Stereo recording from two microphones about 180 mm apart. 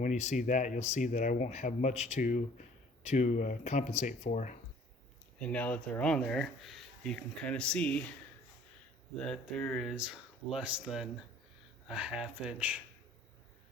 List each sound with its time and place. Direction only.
0.0 s speech: 40° left (ahead or behind)
5.4 s speech: 5° left (ahead or behind)
9.1 s speech: 5° left (ahead or behind)